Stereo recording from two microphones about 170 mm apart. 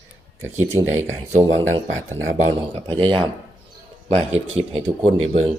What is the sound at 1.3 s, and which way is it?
Speech, 40° right (ahead or behind).